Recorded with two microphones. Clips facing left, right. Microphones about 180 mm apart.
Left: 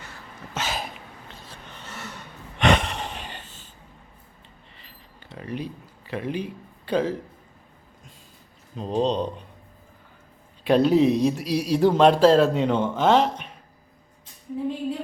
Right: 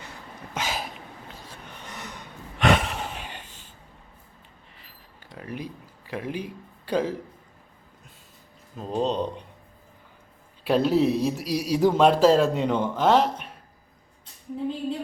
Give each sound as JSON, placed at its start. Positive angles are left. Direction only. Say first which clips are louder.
{"t": 0.5, "sound": "a sound", "louder": "left 1 dB", "side_deg": -10}
{"t": 2.6, "sound": "sigh", "louder": "left 1 dB", "side_deg": -5}
{"t": 5.3, "sound": "speech", "louder": "left 3 dB", "side_deg": -5}
{"t": 8.8, "sound": "speech", "louder": "left 2 dB", "side_deg": -10}
{"t": 10.7, "sound": "speech", "louder": "left 3 dB", "side_deg": 0}